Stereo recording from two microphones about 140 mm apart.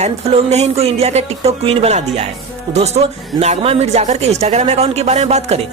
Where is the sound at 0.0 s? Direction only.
50° right (ahead or behind).